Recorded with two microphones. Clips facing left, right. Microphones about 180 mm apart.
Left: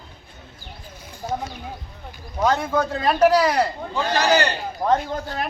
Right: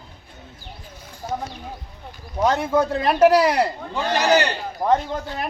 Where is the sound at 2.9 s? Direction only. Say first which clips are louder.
Right 1 dB; 25° right (ahead or behind).